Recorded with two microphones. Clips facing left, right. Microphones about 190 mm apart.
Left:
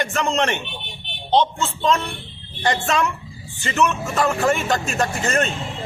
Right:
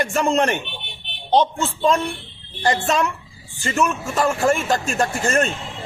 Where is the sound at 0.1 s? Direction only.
10° right (ahead or behind).